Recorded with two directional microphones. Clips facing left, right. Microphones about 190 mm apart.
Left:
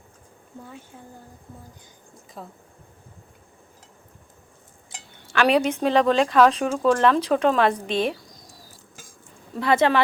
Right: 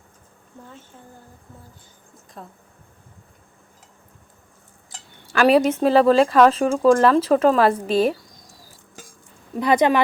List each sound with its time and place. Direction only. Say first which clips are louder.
0.6 s speech: left 1 dB; 10° left (ahead or behind)
2.4 s speech: left 1 dB; centre (ahead or behind)
5.3 s speech: right 4 dB; 5° right (ahead or behind)
9.6 s speech: right 2 dB; 15° right (ahead or behind)